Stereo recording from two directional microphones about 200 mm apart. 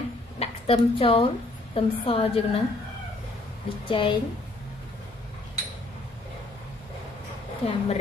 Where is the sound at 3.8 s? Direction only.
25° left (ahead or behind).